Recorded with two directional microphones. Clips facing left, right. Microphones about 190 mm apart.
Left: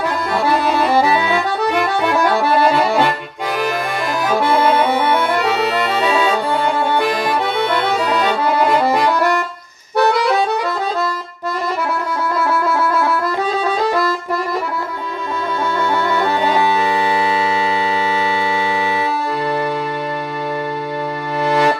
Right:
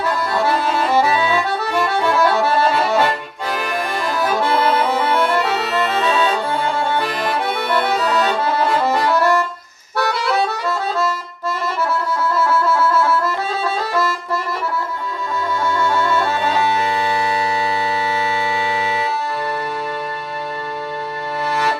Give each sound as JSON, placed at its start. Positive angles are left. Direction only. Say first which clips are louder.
{"t": 0.0, "sound": "accordion", "louder": "left 1 dB", "side_deg": 15}
{"t": 4.5, "sound": "accordion", "louder": "left 4 dB", "side_deg": 15}
{"t": 12.4, "sound": "music", "louder": "even", "side_deg": 15}
{"t": 15.9, "sound": "music", "louder": "left 1 dB", "side_deg": 15}